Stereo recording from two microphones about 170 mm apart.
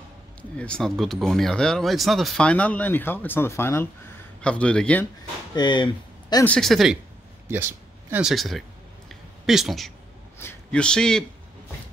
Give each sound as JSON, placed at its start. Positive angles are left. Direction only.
{"t": 0.4, "sound": "speech", "side_deg": 5}
{"t": 5.6, "sound": "speech", "side_deg": 25}
{"t": 6.4, "sound": "speech", "side_deg": 5}
{"t": 7.4, "sound": "speech", "side_deg": -10}
{"t": 9.1, "sound": "a sound", "side_deg": 0}
{"t": 10.4, "sound": "a man's voice", "side_deg": 10}